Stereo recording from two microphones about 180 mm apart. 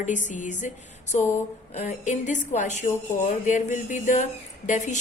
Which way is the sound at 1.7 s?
40° left (ahead or behind).